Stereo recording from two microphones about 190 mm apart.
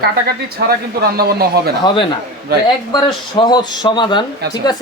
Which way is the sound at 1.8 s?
25° left (ahead or behind).